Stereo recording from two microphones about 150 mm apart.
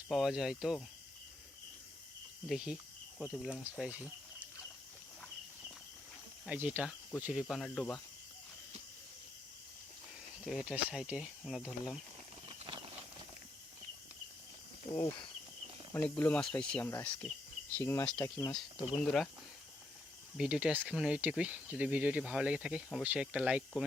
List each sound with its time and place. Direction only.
0.1 s speech: 5° right (ahead or behind)
2.5 s speech: 5° right (ahead or behind)
6.4 s speech: 5° right (ahead or behind)
7.4 s speech: 5° left (ahead or behind)
10.4 s speech: 5° right (ahead or behind)
12.5 s a sound: 35° right (ahead or behind)
15.9 s speech: 10° left (ahead or behind)
20.3 s speech: 5° right (ahead or behind)